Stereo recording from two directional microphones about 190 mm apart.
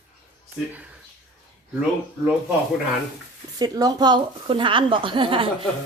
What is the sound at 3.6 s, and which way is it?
A woman's voice, 20° right (ahead or behind).